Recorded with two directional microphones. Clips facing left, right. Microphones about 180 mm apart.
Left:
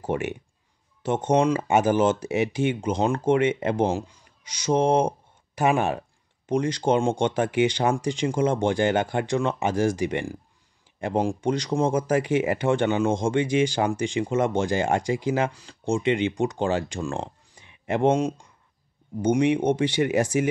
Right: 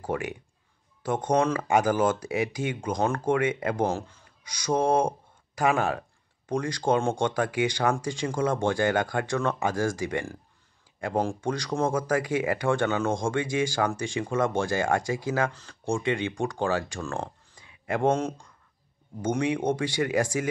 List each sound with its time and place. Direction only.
0.0 s speech: 20° left (ahead or behind)